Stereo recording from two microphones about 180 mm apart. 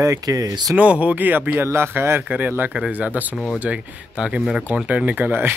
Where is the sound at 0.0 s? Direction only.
20° right (ahead or behind).